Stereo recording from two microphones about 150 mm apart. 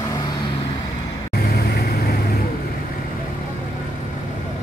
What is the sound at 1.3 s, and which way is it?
Vehicle, 90° left.